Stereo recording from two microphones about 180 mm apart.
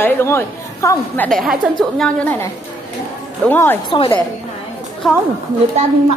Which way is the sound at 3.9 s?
30° left (ahead or behind).